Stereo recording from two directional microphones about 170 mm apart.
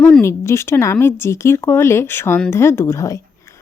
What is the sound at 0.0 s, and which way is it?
Speech, 15° left (ahead or behind).